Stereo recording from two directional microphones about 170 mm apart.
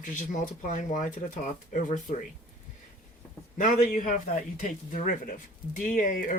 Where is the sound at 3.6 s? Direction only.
50° left (ahead or behind).